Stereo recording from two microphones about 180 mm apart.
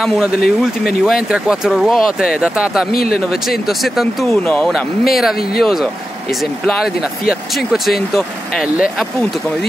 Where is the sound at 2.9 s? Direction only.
55° left (ahead or behind).